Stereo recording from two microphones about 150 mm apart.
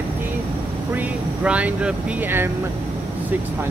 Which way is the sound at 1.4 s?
10° right (ahead or behind).